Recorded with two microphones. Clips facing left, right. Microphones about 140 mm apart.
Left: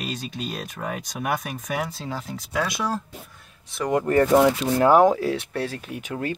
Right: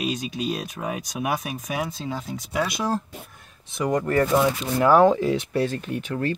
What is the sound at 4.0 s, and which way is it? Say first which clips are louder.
Speech: left 4 dB; 30° left (ahead or behind).